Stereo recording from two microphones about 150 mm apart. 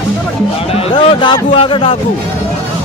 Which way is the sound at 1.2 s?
35° left (ahead or behind).